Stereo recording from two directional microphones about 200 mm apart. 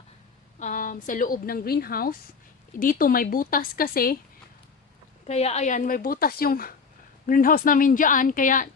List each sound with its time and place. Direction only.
0.6 s a woman's voice: 40° left (ahead or behind)
5.2 s a woman's voice: 35° left (ahead or behind)